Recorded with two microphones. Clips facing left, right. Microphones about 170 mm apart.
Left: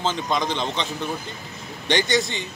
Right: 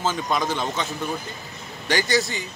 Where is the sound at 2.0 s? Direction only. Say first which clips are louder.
Even; centre (ahead or behind).